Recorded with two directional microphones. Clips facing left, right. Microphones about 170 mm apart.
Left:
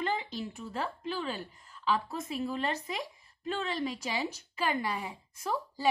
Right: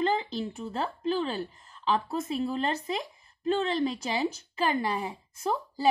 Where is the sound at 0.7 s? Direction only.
30° right (ahead or behind).